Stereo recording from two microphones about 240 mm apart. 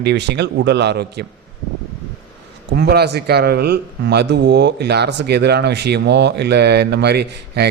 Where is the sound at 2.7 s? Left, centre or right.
Right.